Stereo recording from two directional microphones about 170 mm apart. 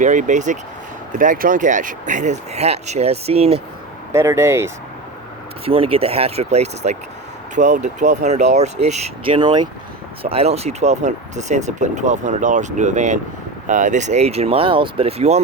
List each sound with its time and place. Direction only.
0.0 s speech: 45° right (ahead or behind)
4.1 s speech: 15° right (ahead or behind)
5.6 s speech: 35° right (ahead or behind)